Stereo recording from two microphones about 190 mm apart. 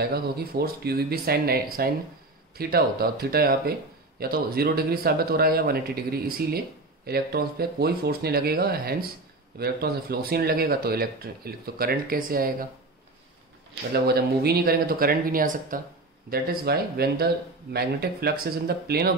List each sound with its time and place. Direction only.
0.0 s speech: 55° right (ahead or behind)
13.9 s speech: 55° right (ahead or behind)